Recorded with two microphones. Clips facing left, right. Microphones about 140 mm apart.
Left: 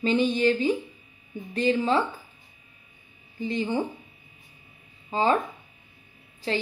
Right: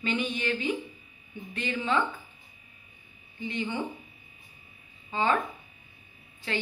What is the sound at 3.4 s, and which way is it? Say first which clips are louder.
Speech: left 5 dB; 35° left (ahead or behind).